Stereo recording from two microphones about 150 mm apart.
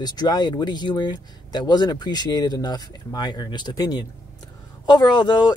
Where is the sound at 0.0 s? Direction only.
25° left (ahead or behind).